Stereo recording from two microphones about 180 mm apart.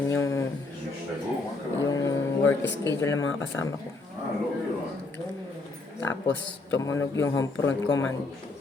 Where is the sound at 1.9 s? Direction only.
15° left (ahead or behind).